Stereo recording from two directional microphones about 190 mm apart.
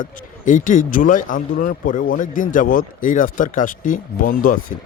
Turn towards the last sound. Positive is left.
turn(degrees=45)  # may be behind; listen again after turning